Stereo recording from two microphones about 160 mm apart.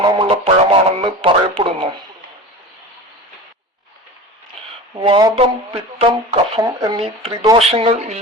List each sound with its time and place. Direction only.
0.0 s radio: 30° right (ahead or behind)
5.0 s speech: 35° right (ahead or behind)
7.0 s speech: 35° right (ahead or behind)